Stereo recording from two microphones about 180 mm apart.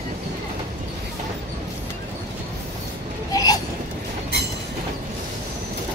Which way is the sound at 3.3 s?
20° left (ahead or behind).